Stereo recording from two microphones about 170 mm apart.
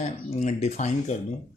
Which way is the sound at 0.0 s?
40° left (ahead or behind).